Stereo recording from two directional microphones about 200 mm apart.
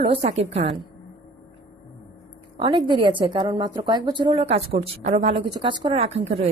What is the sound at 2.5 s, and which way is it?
A woman's voice, 25° right (ahead or behind).